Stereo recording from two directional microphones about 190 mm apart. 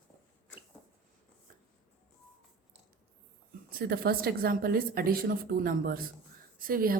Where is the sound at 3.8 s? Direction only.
55° right (ahead or behind).